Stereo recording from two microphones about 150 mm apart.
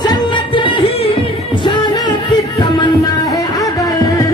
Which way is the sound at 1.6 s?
25° left (ahead or behind).